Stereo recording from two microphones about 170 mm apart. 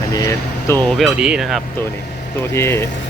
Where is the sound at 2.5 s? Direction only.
15° left (ahead or behind).